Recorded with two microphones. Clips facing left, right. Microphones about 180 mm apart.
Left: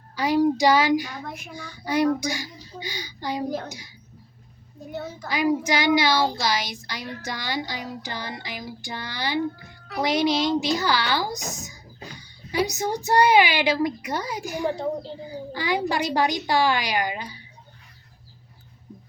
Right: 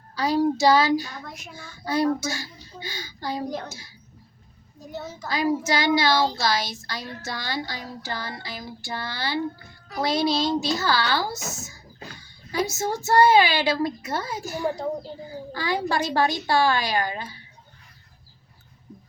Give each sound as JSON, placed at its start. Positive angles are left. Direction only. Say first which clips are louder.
{"t": 0.2, "sound": "a child's voice", "louder": "left 1 dB", "side_deg": 15}
{"t": 1.3, "sound": "a child's voice", "louder": "left 4 dB", "side_deg": 55}
{"t": 1.8, "sound": "speech", "louder": "left 1 dB", "side_deg": 15}
{"t": 4.9, "sound": "a child's voice", "louder": "left 1 dB", "side_deg": 55}
{"t": 5.3, "sound": "speech", "louder": "left 1 dB", "side_deg": 15}